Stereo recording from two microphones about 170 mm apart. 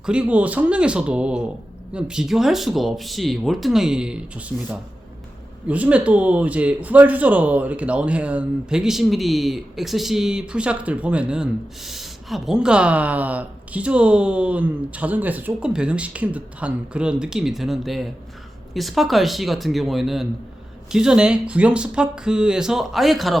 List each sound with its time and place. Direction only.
0.0 s speech: 5° right (ahead or behind)